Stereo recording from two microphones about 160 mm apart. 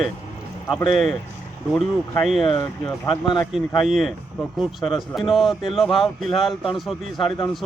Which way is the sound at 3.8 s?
Centre (ahead or behind).